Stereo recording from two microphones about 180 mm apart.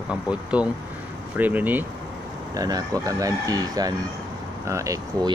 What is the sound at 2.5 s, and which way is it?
Speech, 20° right (ahead or behind).